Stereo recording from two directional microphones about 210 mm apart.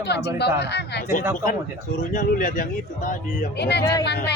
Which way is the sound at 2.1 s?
40° left (ahead or behind).